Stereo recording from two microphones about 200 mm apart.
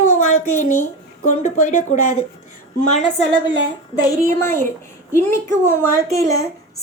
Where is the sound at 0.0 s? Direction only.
35° left (ahead or behind).